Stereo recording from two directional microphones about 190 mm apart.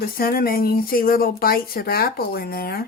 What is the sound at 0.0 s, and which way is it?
Speech, 50° left (ahead or behind).